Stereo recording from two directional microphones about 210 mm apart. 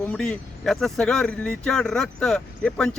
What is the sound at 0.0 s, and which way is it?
Speech, 5° left (ahead or behind).